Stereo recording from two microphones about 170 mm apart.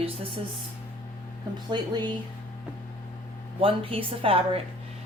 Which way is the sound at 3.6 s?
35° right (ahead or behind).